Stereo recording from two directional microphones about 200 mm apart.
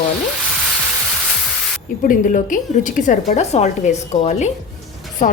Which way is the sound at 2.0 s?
40° left (ahead or behind).